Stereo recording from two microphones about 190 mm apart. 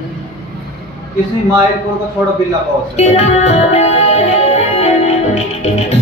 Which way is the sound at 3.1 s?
35° left (ahead or behind).